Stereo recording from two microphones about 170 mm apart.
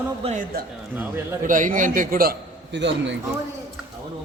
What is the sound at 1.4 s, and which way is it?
A man's voice, 50° right (ahead or behind).